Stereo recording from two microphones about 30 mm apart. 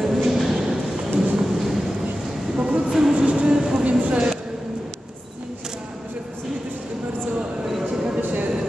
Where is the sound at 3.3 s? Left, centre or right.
Right.